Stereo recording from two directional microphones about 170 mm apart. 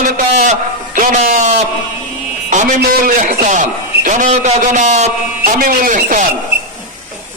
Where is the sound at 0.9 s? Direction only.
50° right (ahead or behind).